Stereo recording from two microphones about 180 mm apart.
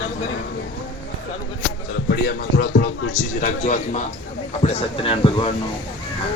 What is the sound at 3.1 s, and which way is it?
Speech, 45° left (ahead or behind).